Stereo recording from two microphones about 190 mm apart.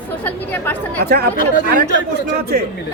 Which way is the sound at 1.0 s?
55° right (ahead or behind).